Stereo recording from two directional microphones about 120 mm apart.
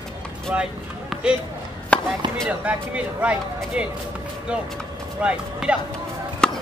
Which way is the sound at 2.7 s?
10° right (ahead or behind).